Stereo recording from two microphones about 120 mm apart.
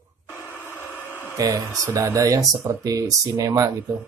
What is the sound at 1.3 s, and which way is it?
Speech, 30° right (ahead or behind).